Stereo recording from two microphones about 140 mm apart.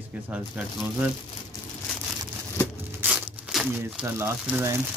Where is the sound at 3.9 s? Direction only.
10° right (ahead or behind).